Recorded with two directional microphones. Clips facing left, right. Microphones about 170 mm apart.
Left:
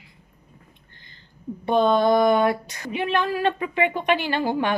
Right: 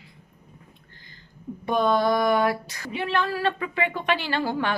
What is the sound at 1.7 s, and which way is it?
Speech, 25° left (ahead or behind).